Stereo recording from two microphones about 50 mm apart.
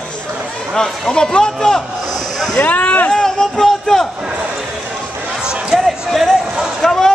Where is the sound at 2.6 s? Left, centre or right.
Left.